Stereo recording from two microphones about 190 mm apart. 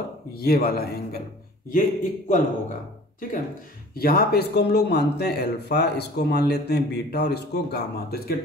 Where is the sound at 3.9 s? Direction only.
55° left (ahead or behind).